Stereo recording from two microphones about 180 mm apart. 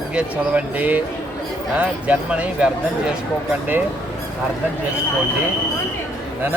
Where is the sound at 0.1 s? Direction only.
5° right (ahead or behind).